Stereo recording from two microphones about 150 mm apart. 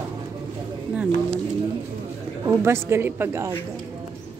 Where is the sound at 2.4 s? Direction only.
20° right (ahead or behind).